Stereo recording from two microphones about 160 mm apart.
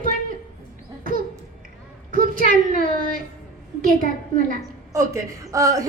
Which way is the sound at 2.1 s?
60° right (ahead or behind).